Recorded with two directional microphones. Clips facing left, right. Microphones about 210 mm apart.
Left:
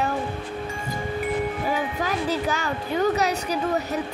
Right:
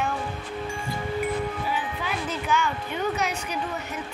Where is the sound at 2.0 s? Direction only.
40° left (ahead or behind).